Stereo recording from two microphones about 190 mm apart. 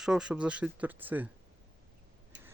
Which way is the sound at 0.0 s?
5° right (ahead or behind).